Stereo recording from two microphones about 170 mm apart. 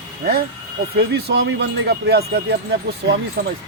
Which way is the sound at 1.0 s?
75° right (ahead or behind).